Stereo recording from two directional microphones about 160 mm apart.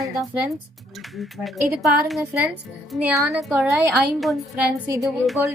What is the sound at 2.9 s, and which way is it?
Speech, 5° right (ahead or behind).